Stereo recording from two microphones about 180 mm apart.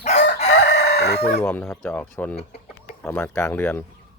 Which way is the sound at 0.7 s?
65° left (ahead or behind).